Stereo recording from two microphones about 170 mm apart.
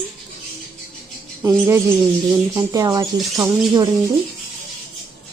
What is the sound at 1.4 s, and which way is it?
Speech, 15° right (ahead or behind).